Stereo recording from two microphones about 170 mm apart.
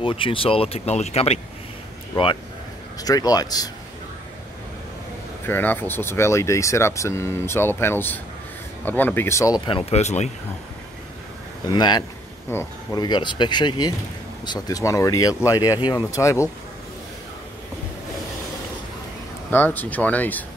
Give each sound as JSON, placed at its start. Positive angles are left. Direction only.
{"t": 0.0, "sound": "speech", "side_deg": 30}
{"t": 3.0, "sound": "speech", "side_deg": 20}
{"t": 5.5, "sound": "speech", "side_deg": 10}
{"t": 11.7, "sound": "speech", "side_deg": 25}
{"t": 12.4, "sound": "speech", "side_deg": 15}
{"t": 13.0, "sound": "speech", "side_deg": 25}
{"t": 19.5, "sound": "speech", "side_deg": 10}